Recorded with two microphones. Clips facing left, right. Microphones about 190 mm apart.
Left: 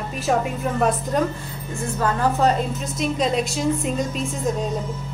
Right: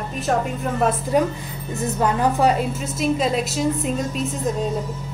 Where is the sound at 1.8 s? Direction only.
15° right (ahead or behind).